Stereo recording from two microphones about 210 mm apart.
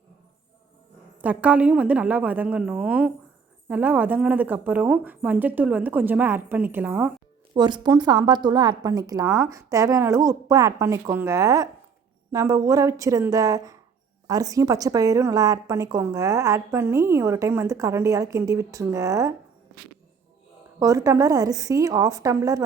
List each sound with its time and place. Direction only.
1.2 s a woman's voice: 5° right (ahead or behind)
7.5 s a woman's voice: 20° right (ahead or behind)
20.7 s a woman's voice: 15° right (ahead or behind)